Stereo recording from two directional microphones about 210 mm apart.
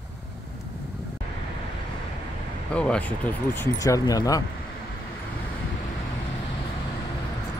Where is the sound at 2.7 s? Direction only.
5° left (ahead or behind).